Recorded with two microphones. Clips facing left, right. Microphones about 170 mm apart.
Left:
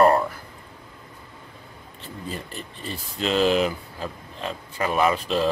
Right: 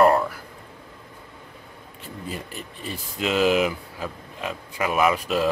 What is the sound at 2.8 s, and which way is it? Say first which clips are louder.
Speech: even; 10° right (ahead or behind).